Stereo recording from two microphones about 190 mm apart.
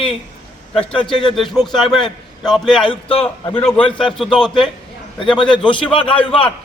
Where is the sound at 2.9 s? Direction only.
30° left (ahead or behind).